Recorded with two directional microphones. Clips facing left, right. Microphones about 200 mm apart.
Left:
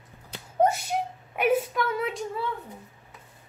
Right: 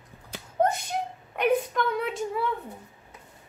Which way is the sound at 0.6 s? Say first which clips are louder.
Left 2 dB; 10° left (ahead or behind).